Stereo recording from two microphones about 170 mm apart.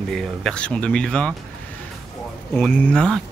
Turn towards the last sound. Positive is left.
turn(degrees=5)  # may be behind; listen again after turning